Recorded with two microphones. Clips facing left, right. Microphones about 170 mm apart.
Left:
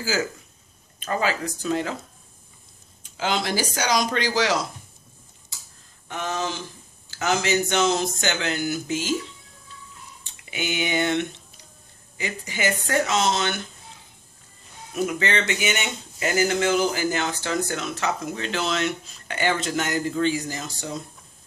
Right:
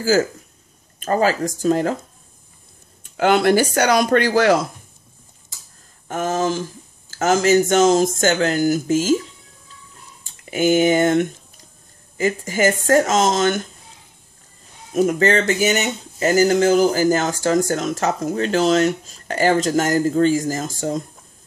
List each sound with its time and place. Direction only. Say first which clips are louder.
0.0 s speech: right 9 dB; 45° right (ahead or behind)
3.0 s speech: right 10 dB; 55° right (ahead or behind)
6.0 s speech: right 8 dB; 45° right (ahead or behind)
15.0 s speech: right 8 dB; 40° right (ahead or behind)